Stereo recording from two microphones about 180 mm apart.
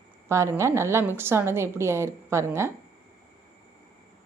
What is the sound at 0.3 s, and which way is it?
A woman's voice, 15° right (ahead or behind).